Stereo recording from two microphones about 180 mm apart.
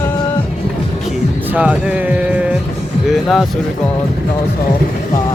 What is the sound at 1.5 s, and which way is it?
Speech, 10° right (ahead or behind).